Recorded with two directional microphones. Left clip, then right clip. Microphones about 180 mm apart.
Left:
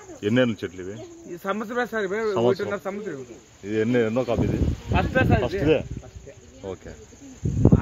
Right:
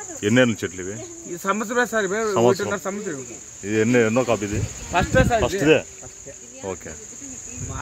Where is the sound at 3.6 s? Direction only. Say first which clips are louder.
Right 4 dB; 15° right (ahead or behind).